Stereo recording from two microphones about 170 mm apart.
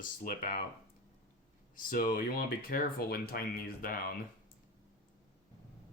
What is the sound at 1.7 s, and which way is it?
Speech, 55° left (ahead or behind).